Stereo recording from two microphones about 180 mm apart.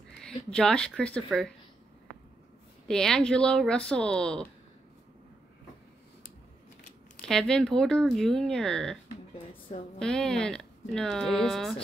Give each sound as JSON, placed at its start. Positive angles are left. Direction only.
{"t": 0.2, "sound": "speech", "side_deg": 5}
{"t": 2.9, "sound": "speech", "side_deg": 5}
{"t": 7.2, "sound": "speech", "side_deg": 5}
{"t": 9.3, "sound": "a sound", "side_deg": 30}
{"t": 9.9, "sound": "speech", "side_deg": 5}